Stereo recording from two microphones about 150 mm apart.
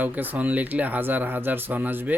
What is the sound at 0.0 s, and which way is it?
Speech, 10° right (ahead or behind).